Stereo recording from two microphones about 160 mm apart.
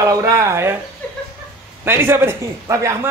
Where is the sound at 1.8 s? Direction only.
15° right (ahead or behind).